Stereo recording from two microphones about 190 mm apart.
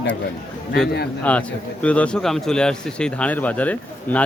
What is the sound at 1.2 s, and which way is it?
A man's voice, 5° left (ahead or behind).